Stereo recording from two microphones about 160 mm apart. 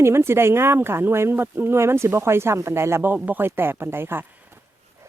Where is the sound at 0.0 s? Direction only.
15° right (ahead or behind).